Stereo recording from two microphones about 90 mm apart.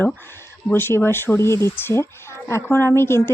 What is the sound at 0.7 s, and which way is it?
A woman's voice, 25° left (ahead or behind).